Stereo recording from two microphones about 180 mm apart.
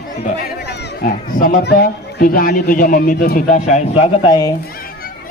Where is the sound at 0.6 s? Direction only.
65° left (ahead or behind); by 4.5 s 25° left (ahead or behind).